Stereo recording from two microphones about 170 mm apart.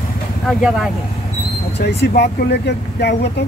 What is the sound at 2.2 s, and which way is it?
Speech, 80° left.